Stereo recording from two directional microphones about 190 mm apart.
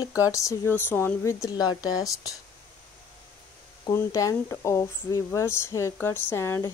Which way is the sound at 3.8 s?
15° left (ahead or behind).